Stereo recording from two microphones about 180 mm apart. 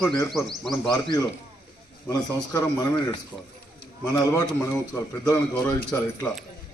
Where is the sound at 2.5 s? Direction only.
20° left (ahead or behind).